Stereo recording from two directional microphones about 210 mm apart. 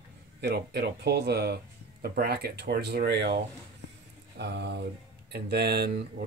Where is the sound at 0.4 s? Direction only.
55° right (ahead or behind).